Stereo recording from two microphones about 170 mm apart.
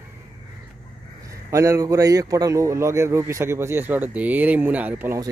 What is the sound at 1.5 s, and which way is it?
Speech, 20° right (ahead or behind).